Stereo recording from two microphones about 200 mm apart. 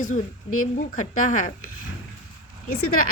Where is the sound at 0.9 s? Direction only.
40° left (ahead or behind).